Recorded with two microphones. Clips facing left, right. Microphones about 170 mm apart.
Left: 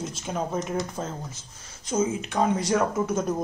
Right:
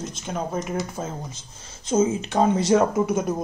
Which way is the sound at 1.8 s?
25° right (ahead or behind).